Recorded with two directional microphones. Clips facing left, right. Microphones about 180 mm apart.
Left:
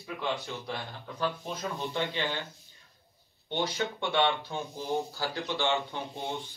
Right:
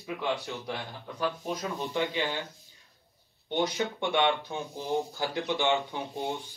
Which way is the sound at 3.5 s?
15° right (ahead or behind).